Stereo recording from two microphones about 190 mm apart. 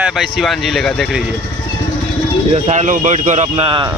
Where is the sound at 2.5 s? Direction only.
35° right (ahead or behind).